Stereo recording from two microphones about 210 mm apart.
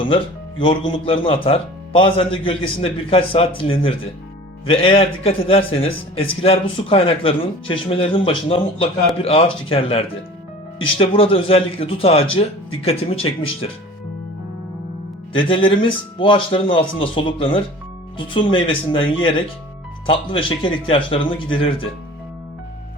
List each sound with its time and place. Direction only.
0.6 s a man's voice: 25° left (ahead or behind)
15.4 s a man's voice: 25° left (ahead or behind)